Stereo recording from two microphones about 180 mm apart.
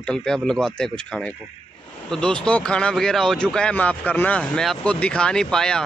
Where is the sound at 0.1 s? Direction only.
5° left (ahead or behind).